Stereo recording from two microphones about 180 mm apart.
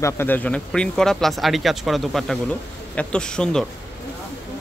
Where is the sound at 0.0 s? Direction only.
10° left (ahead or behind).